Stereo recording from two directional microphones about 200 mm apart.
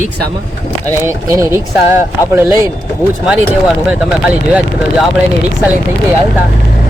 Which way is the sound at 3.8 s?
5° right (ahead or behind).